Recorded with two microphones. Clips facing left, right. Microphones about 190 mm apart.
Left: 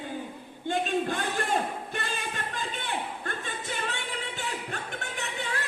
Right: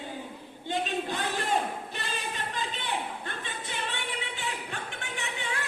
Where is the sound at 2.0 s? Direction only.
50° left (ahead or behind).